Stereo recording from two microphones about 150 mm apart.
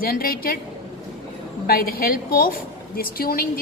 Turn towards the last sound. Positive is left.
turn(degrees=75)  # may be behind; listen again after turning